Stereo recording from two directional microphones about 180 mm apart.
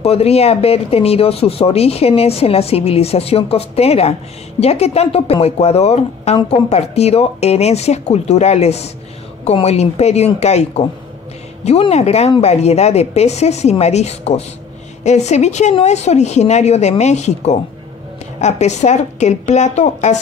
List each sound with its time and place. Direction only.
0.0 s speech: 35° left (ahead or behind)